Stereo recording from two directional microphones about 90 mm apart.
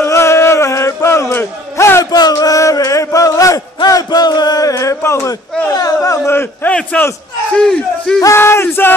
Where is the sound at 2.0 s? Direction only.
50° left (ahead or behind).